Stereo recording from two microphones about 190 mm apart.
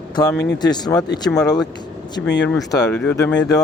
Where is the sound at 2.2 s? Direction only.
65° left (ahead or behind).